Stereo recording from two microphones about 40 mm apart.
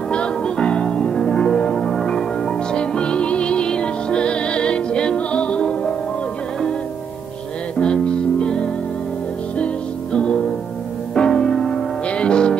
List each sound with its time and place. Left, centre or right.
0.1 s music: left
7.8 s music: left
10.1 s music: left